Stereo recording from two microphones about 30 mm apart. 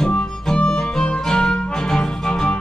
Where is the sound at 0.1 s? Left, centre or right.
Left.